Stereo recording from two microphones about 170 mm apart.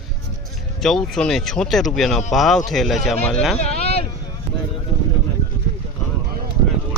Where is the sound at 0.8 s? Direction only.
Centre (ahead or behind).